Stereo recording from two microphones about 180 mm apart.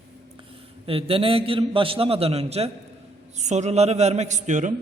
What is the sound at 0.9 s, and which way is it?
A man's voice, 30° right (ahead or behind).